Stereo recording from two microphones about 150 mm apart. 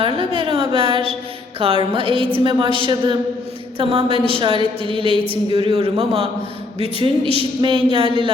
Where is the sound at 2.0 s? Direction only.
35° right (ahead or behind).